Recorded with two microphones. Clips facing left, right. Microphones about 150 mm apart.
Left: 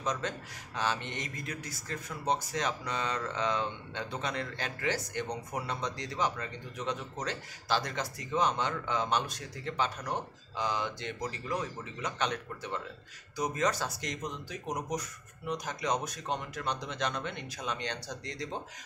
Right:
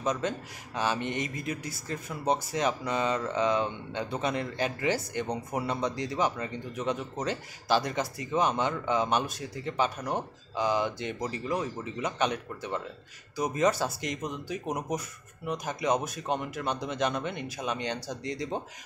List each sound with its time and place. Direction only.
0.0 s a man's voice: 10° right (ahead or behind)